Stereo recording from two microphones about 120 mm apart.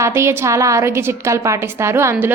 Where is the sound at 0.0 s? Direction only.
25° right (ahead or behind).